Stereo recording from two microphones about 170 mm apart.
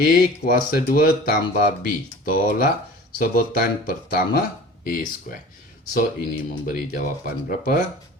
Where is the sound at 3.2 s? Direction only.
65° left (ahead or behind).